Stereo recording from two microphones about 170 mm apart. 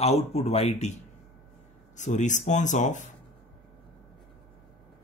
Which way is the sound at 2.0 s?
45° left (ahead or behind).